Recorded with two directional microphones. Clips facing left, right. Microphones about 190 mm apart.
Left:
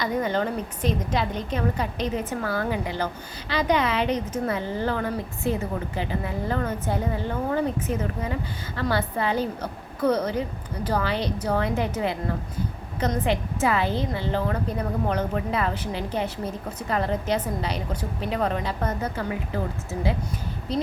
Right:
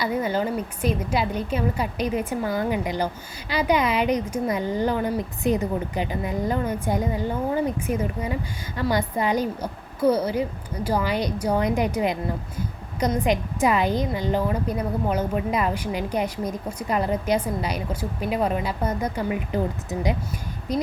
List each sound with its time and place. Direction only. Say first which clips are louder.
0.0 s a woman's voice: right 1 dB; 10° right (ahead or behind)